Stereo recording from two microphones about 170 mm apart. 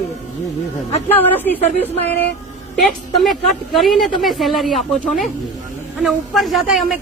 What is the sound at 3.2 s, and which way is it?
Speech, centre (ahead or behind).